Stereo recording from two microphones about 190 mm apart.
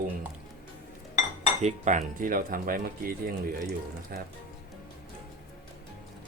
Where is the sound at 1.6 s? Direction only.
40° right (ahead or behind).